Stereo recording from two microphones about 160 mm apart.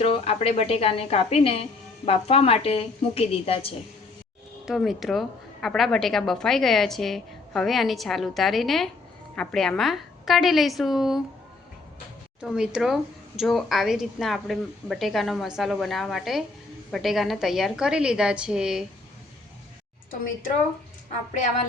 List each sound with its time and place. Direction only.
0.0 s a woman's voice: 40° left (ahead or behind)
4.6 s speech: centre (ahead or behind)
12.4 s speech: 5° right (ahead or behind)